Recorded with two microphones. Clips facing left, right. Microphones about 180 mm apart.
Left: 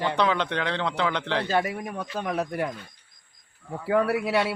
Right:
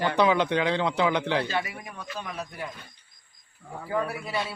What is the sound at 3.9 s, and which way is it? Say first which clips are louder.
Speech: left 7 dB; 70° left (ahead or behind).